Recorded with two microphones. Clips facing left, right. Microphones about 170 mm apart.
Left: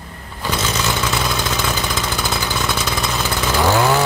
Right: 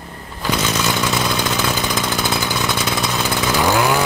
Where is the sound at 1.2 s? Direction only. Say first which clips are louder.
Right 2 dB; 5° right (ahead or behind).